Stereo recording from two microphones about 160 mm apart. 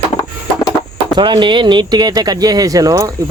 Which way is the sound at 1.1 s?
30° right (ahead or behind).